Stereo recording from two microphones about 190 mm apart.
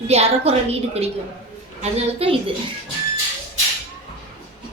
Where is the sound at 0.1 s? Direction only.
35° right (ahead or behind).